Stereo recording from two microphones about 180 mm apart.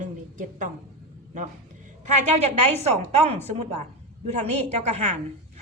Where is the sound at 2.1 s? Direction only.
40° right (ahead or behind).